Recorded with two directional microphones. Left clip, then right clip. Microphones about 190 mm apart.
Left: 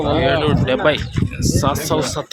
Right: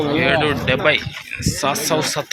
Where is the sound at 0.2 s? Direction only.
10° left (ahead or behind).